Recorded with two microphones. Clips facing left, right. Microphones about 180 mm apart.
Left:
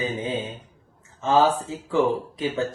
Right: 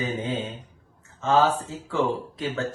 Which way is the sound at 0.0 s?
15° left (ahead or behind).